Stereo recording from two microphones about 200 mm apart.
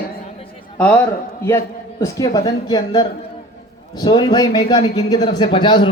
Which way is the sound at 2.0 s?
15° left (ahead or behind).